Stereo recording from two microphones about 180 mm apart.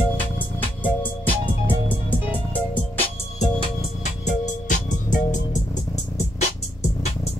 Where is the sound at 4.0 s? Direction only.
40° left (ahead or behind).